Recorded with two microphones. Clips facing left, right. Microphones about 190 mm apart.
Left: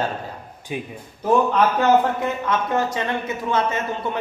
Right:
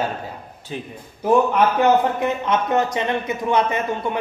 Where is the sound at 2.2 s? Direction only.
20° right (ahead or behind).